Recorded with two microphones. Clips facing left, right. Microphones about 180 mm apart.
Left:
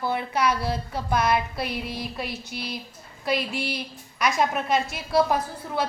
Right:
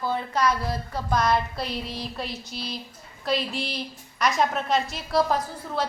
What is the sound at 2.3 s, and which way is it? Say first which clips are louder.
Speech: left 1 dB; 55° left (ahead or behind).